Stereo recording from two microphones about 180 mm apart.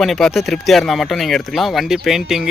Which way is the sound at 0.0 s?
Centre (ahead or behind).